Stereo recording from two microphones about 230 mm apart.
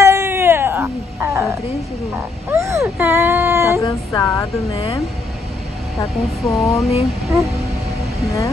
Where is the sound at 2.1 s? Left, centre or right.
Centre.